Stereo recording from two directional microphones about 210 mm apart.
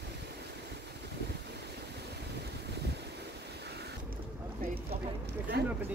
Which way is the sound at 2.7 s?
55° right (ahead or behind).